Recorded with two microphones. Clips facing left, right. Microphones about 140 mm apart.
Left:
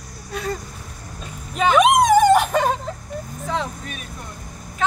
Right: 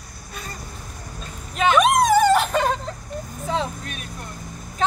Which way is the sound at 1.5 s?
5° left (ahead or behind).